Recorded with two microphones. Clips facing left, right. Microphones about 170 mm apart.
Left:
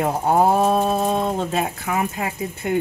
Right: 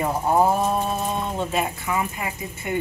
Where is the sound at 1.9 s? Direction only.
65° left (ahead or behind).